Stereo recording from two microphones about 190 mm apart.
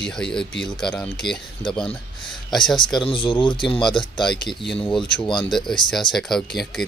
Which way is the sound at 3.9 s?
Centre (ahead or behind).